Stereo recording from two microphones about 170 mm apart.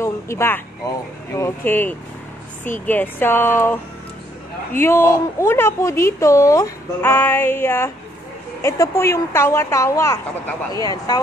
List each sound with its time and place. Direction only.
0.0 s a woman's voice: 15° left (ahead or behind)